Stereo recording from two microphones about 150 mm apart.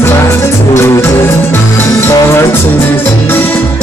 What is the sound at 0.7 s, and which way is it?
Music, 20° left (ahead or behind).